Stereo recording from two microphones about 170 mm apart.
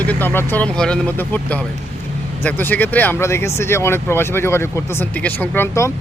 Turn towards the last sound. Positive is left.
turn(degrees=15)  # may be behind; listen again after turning